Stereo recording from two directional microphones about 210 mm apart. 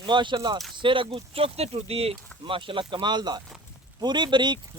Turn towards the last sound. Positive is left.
turn(degrees=-20)  # may be behind; listen again after turning